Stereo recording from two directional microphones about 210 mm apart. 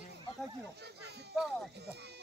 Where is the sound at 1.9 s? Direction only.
55° right (ahead or behind).